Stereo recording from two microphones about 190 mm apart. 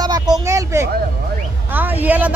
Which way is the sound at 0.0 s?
20° right (ahead or behind).